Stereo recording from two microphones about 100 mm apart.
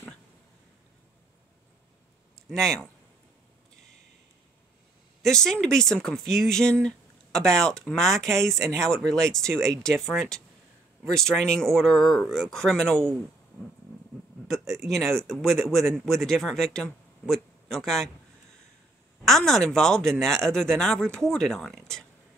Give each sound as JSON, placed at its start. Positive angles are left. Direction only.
{"t": 2.3, "sound": "speech", "side_deg": 5}
{"t": 5.2, "sound": "speech", "side_deg": 5}
{"t": 8.4, "sound": "speech", "side_deg": -30}
{"t": 8.8, "sound": "speech", "side_deg": 5}
{"t": 14.7, "sound": "speech", "side_deg": 5}
{"t": 19.2, "sound": "speech", "side_deg": 5}